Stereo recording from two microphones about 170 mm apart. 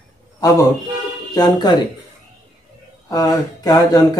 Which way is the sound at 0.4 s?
20° left (ahead or behind).